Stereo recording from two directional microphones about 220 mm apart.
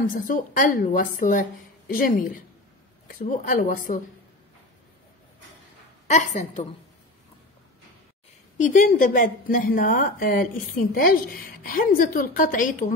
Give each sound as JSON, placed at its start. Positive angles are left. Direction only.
{"t": 0.1, "sound": "a woman's voice", "side_deg": 40}
{"t": 6.0, "sound": "a woman's voice", "side_deg": 35}
{"t": 8.5, "sound": "a woman's voice", "side_deg": 35}